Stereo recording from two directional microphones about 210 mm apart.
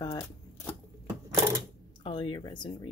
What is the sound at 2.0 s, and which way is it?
Speech, 20° left (ahead or behind).